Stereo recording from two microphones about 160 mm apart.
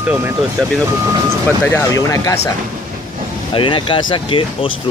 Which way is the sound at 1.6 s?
20° left (ahead or behind).